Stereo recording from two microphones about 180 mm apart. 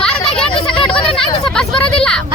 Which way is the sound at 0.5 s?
30° left (ahead or behind).